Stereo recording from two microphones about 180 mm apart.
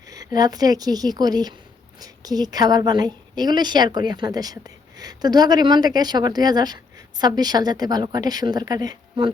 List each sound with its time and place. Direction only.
0.1 s a woman's voice: 20° right (ahead or behind)